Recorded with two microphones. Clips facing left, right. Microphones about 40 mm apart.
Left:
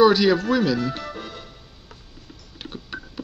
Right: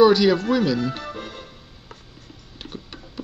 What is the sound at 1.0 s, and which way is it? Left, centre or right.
Music, right.